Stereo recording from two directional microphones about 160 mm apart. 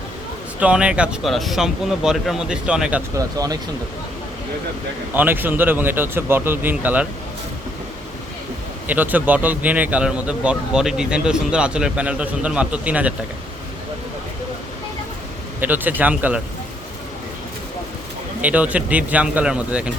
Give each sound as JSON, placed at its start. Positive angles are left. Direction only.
{"t": 0.6, "sound": "speech", "side_deg": -5}
{"t": 3.2, "sound": "speech", "side_deg": -20}
{"t": 5.1, "sound": "a man's voice", "side_deg": -10}
{"t": 8.9, "sound": "a man's voice", "side_deg": -10}
{"t": 15.6, "sound": "a man's voice", "side_deg": -10}
{"t": 18.4, "sound": "a man's voice", "side_deg": -10}